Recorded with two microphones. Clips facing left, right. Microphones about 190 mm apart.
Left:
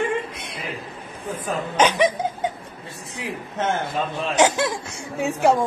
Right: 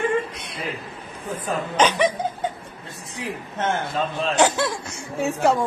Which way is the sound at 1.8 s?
10° left (ahead or behind).